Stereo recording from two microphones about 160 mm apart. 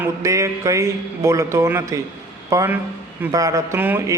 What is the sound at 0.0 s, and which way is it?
Speech, 20° right (ahead or behind).